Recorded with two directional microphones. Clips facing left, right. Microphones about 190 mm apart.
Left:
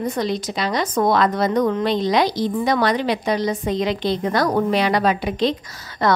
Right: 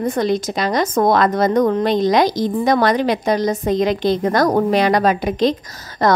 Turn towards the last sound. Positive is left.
turn(degrees=-40)  # may be behind; listen again after turning